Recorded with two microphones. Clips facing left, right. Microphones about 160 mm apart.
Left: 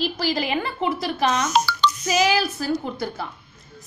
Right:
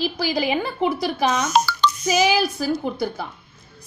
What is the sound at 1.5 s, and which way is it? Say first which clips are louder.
Speech: right 2 dB; 45° right (ahead or behind).